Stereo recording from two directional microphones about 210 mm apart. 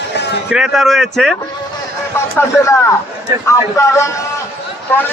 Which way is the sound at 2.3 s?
10° left (ahead or behind).